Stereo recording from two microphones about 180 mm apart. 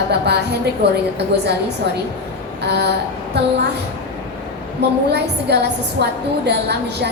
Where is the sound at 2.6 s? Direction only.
70° right (ahead or behind).